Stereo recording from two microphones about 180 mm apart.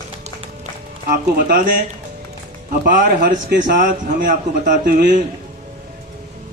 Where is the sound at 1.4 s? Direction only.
50° right (ahead or behind).